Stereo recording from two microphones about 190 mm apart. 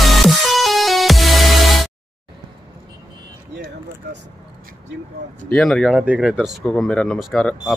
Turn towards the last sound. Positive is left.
turn(degrees=5)  # may be behind; listen again after turning